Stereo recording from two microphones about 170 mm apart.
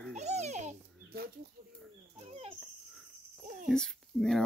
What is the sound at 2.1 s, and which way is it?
Dog, 35° right (ahead or behind).